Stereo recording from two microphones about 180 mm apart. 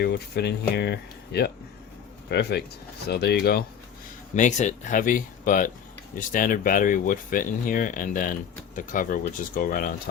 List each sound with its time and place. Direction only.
0.0 s speech: 65° left (ahead or behind)
4.4 s speech: 40° left (ahead or behind)